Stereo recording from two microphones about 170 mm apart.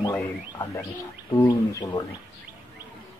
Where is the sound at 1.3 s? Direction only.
25° left (ahead or behind).